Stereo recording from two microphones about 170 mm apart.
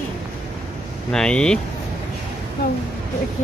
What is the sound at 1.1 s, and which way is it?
Speech, 5° left (ahead or behind).